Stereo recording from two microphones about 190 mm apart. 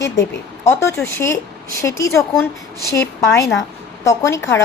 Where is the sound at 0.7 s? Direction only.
15° left (ahead or behind).